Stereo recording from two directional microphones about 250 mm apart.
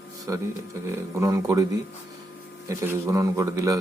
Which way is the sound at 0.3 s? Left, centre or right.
Centre.